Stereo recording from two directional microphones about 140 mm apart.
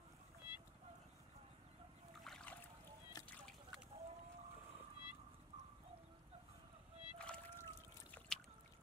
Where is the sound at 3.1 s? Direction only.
25° left (ahead or behind).